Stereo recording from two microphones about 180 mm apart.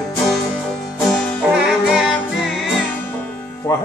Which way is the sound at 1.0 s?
Centre (ahead or behind).